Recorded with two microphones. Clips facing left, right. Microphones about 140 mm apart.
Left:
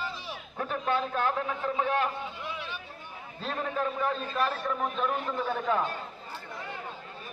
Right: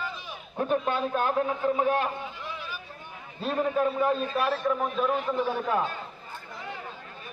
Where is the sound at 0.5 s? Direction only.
20° right (ahead or behind).